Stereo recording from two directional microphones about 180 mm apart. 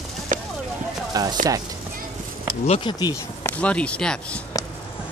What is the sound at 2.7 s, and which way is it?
Speech, 25° left (ahead or behind).